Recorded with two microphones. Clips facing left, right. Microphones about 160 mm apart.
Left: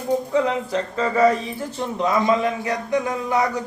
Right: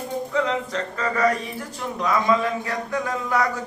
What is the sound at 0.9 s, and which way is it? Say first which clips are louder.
A man's voice: left 4 dB; 25° left (ahead or behind).